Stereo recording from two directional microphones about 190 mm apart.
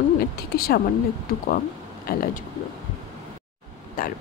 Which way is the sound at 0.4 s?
50° left (ahead or behind).